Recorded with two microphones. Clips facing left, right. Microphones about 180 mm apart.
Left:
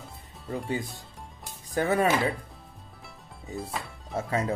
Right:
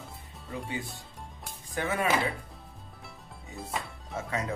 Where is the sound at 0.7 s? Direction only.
40° left (ahead or behind).